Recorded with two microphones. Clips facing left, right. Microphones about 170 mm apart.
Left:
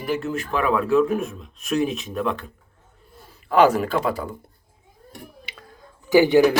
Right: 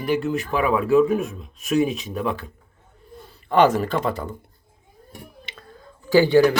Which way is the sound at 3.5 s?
5° left (ahead or behind).